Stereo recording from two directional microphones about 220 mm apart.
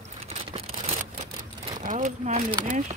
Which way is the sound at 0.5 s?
30° right (ahead or behind).